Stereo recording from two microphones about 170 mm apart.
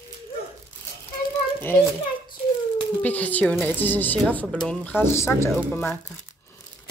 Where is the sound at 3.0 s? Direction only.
10° left (ahead or behind).